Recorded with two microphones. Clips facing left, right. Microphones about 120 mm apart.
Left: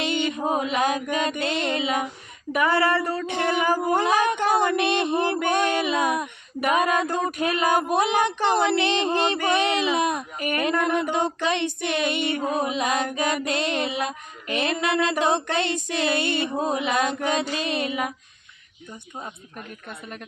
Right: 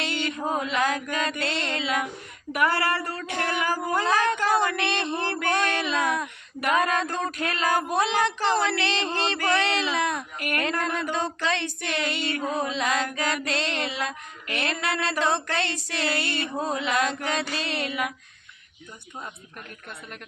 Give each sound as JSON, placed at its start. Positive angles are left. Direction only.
{"t": 0.0, "sound": "mantra", "side_deg": 20}
{"t": 2.5, "sound": "speech", "side_deg": 20}